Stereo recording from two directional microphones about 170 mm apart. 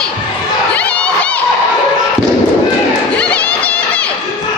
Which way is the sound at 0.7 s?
10° left (ahead or behind).